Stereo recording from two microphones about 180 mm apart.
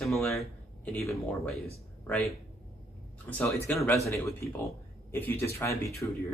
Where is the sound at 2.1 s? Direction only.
10° left (ahead or behind).